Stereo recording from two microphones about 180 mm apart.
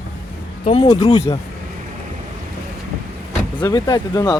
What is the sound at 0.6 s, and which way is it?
Speech, 30° left (ahead or behind).